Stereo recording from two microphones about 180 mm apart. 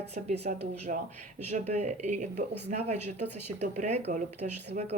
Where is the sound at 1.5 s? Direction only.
40° right (ahead or behind).